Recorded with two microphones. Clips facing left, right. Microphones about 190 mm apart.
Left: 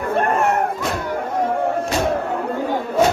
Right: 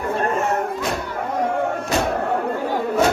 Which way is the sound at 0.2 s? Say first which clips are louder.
Left 4 dB; 60° left (ahead or behind).